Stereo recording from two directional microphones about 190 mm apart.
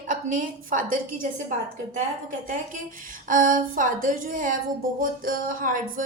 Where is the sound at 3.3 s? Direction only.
45° right (ahead or behind).